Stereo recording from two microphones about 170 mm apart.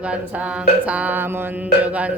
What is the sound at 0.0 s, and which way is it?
Mantra, 5° right (ahead or behind).